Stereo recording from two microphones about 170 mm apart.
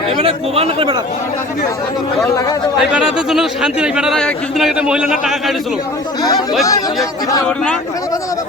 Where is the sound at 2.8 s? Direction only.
5° right (ahead or behind).